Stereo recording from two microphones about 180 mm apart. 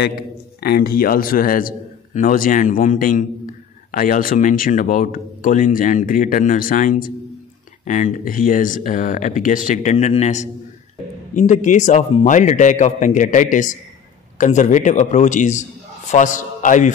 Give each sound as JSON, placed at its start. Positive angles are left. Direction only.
{"t": 0.6, "sound": "speech", "side_deg": 60}